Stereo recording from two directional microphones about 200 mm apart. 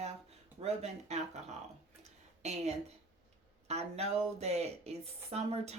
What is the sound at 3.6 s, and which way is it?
A woman's voice, 30° right (ahead or behind).